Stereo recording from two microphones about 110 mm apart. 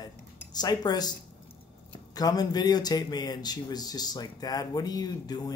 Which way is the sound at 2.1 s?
35° left (ahead or behind).